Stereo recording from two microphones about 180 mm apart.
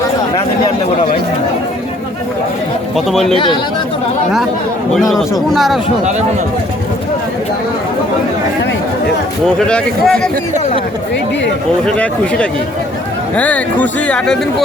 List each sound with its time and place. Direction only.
2.9 s speech: centre (ahead or behind)
3.3 s speech: 25° left (ahead or behind)
4.9 s speech: centre (ahead or behind)
9.6 s speech: 5° left (ahead or behind)
11.9 s speech: 5° left (ahead or behind)